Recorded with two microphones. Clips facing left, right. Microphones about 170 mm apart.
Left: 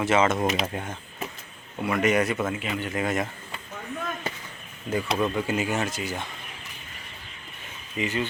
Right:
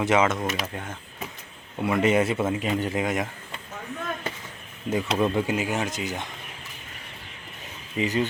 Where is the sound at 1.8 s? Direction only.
25° right (ahead or behind).